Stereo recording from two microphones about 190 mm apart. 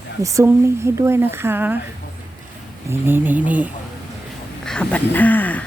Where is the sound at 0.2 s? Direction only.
15° right (ahead or behind).